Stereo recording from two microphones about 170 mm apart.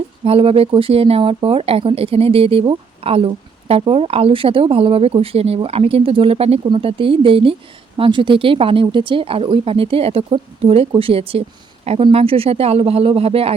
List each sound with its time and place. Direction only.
0.3 s speech: 35° right (ahead or behind)